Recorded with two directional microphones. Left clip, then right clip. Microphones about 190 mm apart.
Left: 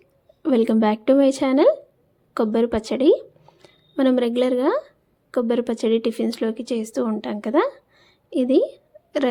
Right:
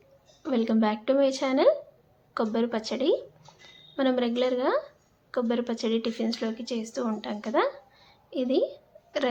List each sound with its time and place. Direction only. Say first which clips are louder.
0.4 s a woman's voice: left 7 dB; 45° left (ahead or behind)